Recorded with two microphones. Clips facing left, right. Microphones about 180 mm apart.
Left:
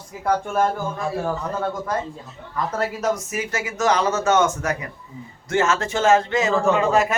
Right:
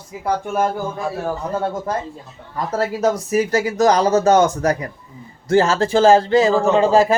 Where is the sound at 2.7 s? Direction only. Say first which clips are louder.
Right 6 dB; 35° right (ahead or behind).